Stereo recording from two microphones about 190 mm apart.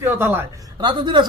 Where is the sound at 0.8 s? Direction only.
25° right (ahead or behind).